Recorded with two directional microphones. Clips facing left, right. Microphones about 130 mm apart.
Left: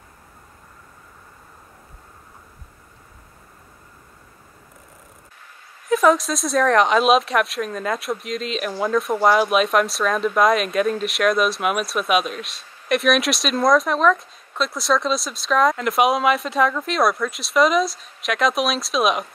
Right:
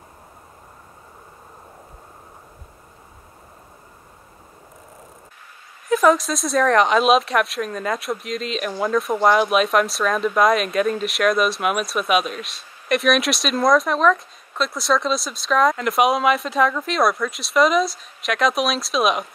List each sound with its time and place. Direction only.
5.9 s speech: centre (ahead or behind)